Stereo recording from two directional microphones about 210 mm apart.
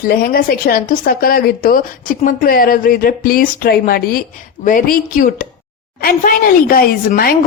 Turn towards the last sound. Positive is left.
turn(degrees=45)  # may be behind; listen again after turning